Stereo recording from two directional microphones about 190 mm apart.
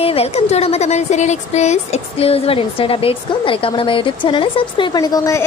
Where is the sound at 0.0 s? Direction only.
30° left (ahead or behind).